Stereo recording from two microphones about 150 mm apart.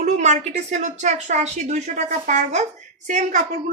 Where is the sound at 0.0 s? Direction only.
50° right (ahead or behind).